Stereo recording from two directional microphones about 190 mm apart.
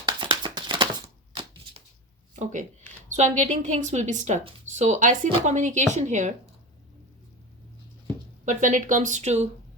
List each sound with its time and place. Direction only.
0.0 s a sound: 25° right (ahead or behind)
2.4 s a woman's voice: 40° right (ahead or behind)
8.4 s a woman's voice: 40° right (ahead or behind)